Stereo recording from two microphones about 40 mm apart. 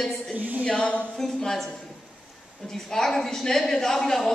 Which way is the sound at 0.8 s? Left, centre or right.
Left.